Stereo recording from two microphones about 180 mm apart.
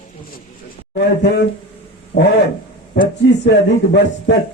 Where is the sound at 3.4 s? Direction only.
65° left (ahead or behind).